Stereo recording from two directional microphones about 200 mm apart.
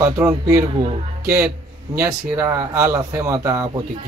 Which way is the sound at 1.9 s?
15° right (ahead or behind).